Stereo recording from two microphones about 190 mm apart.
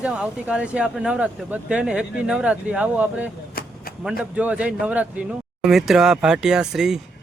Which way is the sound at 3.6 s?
50° left (ahead or behind).